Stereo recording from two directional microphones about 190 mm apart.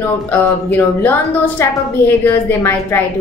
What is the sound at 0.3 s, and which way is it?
A woman's voice, 10° left (ahead or behind).